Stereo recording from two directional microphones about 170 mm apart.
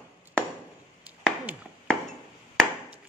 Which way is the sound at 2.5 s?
Centre (ahead or behind).